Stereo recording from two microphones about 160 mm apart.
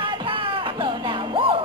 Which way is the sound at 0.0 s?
30° right (ahead or behind).